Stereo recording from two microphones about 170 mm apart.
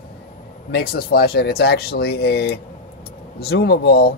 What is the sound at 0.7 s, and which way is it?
A man's voice, 65° left (ahead or behind).